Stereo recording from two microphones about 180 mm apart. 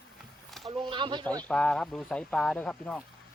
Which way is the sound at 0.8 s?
25° right (ahead or behind).